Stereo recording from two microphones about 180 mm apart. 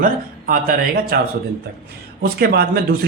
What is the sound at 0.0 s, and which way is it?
Speech, 50° right (ahead or behind).